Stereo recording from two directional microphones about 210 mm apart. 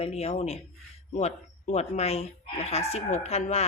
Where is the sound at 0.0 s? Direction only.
30° left (ahead or behind).